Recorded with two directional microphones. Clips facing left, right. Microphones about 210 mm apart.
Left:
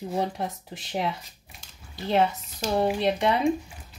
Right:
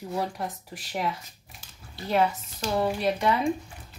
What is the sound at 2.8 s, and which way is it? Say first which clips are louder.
Speech: left 2 dB; 25° left (ahead or behind).